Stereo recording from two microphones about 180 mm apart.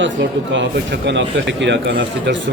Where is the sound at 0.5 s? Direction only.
85° right.